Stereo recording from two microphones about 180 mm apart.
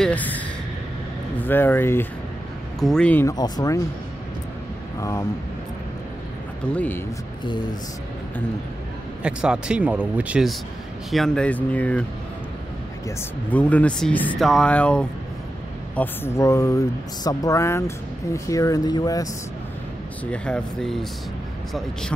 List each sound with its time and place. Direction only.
0.0 s speech: 10° left (ahead or behind)
1.4 s speech: 10° left (ahead or behind)
6.7 s speech: 10° left (ahead or behind)
9.2 s speech: 5° right (ahead or behind)
13.5 s speech: 10° left (ahead or behind)
20.2 s speech: 5° left (ahead or behind)